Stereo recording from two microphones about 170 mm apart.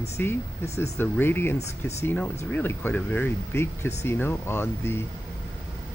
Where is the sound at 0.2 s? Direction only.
10° left (ahead or behind).